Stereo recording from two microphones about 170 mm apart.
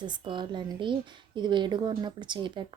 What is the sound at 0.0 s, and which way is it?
Speech, 30° right (ahead or behind).